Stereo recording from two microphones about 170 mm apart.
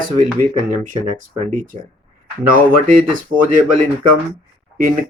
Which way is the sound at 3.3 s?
50° right (ahead or behind).